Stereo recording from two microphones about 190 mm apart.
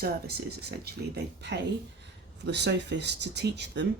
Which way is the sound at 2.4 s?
65° right (ahead or behind).